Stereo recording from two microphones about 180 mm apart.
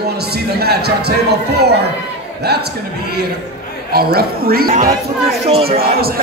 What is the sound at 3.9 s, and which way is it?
Speech, 60° right (ahead or behind).